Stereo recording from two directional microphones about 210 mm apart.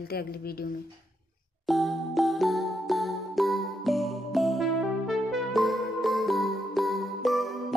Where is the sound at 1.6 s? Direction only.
Centre (ahead or behind).